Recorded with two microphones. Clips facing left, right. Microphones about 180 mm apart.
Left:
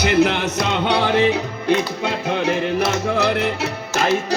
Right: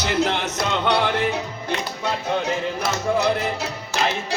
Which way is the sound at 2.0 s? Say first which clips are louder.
Even; 60° left (ahead or behind).